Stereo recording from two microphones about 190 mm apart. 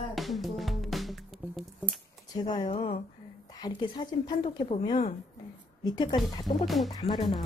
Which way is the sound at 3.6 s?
20° left (ahead or behind).